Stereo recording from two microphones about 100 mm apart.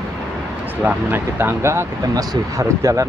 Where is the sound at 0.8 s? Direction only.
20° right (ahead or behind).